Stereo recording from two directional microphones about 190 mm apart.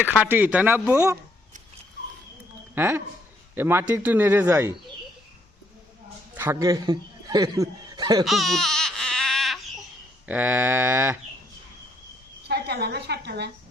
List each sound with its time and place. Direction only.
0.1 s a man's voice: 10° right (ahead or behind)
2.7 s a man's voice: 10° right (ahead or behind)
6.3 s a man's voice: 10° right (ahead or behind)
8.2 s baby cry: centre (ahead or behind)
10.2 s a man's voice: 10° right (ahead or behind)
12.5 s a woman's voice: 60° right (ahead or behind)